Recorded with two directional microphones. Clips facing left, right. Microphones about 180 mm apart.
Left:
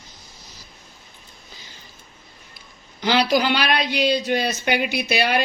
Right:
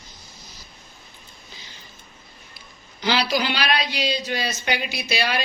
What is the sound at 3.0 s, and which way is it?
Speech, 50° left (ahead or behind).